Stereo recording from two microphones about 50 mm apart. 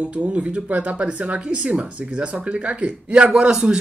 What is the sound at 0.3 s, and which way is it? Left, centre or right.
A man's voice, right.